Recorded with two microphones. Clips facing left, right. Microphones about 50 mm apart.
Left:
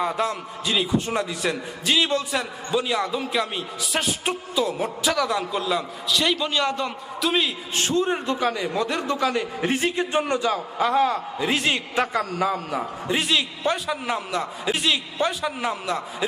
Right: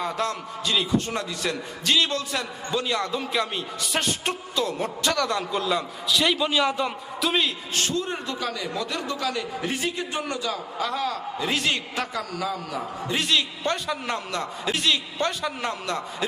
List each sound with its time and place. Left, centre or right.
0.0 s a man's voice: centre
7.8 s a man's voice: left; by 16.0 s centre